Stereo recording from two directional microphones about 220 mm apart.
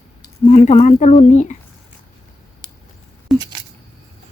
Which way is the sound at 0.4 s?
30° left (ahead or behind).